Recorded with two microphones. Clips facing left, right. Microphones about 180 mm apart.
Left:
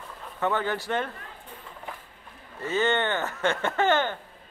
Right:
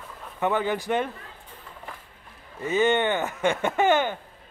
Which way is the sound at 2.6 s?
15° right (ahead or behind).